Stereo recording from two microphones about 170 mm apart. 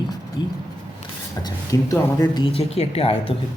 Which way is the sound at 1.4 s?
20° left (ahead or behind).